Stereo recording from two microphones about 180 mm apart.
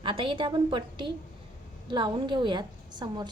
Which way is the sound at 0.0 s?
30° right (ahead or behind).